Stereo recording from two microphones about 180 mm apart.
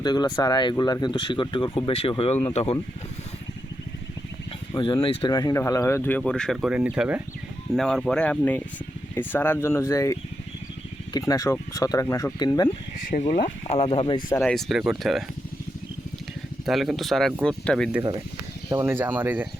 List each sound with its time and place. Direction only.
0.0 s speech: 25° left (ahead or behind)
4.7 s speech: 25° left (ahead or behind)
13.0 s speech: 45° left (ahead or behind)
14.4 s speech: centre (ahead or behind)
16.6 s speech: centre (ahead or behind)
18.9 s speech: 10° right (ahead or behind)